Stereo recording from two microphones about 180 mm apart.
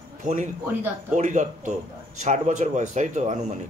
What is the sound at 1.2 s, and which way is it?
Speech, 40° right (ahead or behind).